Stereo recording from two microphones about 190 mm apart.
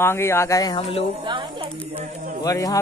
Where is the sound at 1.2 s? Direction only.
25° right (ahead or behind).